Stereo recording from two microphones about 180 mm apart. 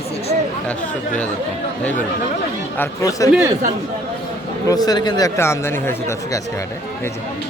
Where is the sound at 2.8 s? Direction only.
15° left (ahead or behind).